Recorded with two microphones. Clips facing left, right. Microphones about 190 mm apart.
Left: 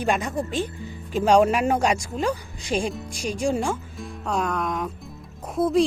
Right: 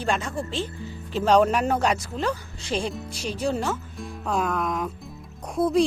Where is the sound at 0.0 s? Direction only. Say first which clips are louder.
Left 3 dB; 15° left (ahead or behind).